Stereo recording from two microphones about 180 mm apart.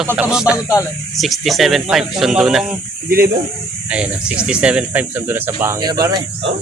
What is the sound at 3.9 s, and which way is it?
Speech, 5° right (ahead or behind).